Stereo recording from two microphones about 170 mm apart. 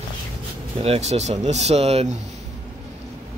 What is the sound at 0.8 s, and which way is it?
Speech, 40° right (ahead or behind).